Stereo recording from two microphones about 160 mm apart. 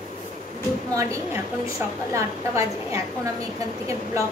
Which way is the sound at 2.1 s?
20° right (ahead or behind).